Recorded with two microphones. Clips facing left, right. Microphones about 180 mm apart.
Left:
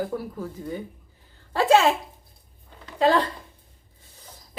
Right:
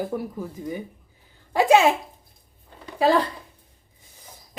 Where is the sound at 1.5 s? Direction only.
15° right (ahead or behind).